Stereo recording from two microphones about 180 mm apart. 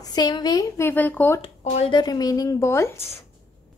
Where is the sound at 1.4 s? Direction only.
35° left (ahead or behind).